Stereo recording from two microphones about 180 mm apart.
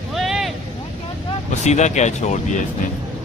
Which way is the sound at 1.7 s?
40° left (ahead or behind).